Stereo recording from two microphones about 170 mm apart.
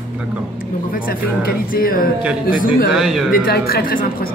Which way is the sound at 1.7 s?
55° left (ahead or behind).